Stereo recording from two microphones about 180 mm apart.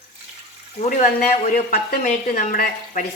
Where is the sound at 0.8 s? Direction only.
40° left (ahead or behind).